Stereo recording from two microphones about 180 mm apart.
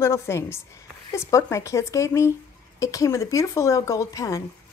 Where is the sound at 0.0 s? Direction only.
15° left (ahead or behind).